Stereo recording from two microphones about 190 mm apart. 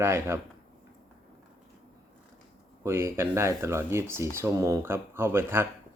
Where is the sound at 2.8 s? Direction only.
15° right (ahead or behind).